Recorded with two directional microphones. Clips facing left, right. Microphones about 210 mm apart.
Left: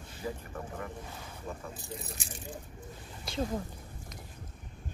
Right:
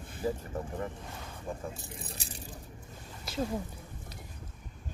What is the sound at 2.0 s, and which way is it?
Speech, 35° right (ahead or behind).